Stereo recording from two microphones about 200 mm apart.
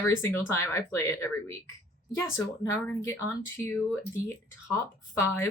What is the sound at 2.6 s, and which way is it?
Speech, 15° left (ahead or behind).